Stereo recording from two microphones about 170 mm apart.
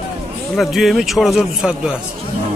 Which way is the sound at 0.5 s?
Centre (ahead or behind).